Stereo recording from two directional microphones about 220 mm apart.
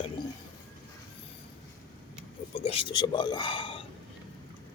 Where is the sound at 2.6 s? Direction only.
25° left (ahead or behind).